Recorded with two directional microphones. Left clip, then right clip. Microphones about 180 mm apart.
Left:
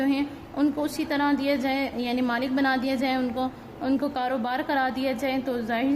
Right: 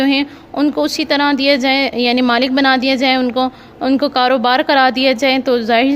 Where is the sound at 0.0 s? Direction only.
45° right (ahead or behind).